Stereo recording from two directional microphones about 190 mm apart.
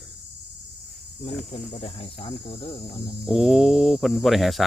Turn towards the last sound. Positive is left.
turn(degrees=0)  # may be behind; listen again after turning